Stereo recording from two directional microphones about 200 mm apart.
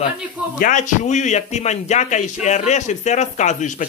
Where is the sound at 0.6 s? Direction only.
40° left (ahead or behind).